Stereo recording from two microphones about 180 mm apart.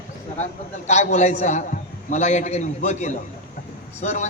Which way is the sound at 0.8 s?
40° left (ahead or behind).